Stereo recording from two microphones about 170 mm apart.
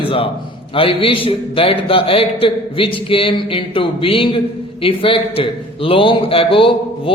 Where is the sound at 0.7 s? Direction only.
30° left (ahead or behind).